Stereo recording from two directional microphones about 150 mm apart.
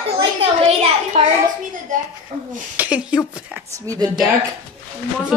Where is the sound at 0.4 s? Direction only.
45° right (ahead or behind).